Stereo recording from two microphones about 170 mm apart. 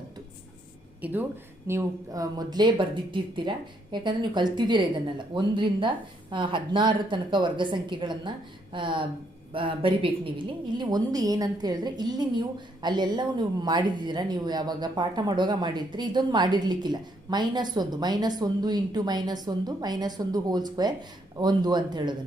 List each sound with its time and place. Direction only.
1.0 s a woman's voice: 10° right (ahead or behind); by 22.1 s 25° right (ahead or behind)